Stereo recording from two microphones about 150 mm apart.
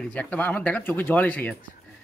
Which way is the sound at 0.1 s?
10° left (ahead or behind).